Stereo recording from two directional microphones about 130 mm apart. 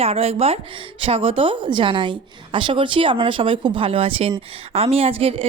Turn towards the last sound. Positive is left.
turn(degrees=-50)  # may be behind; listen again after turning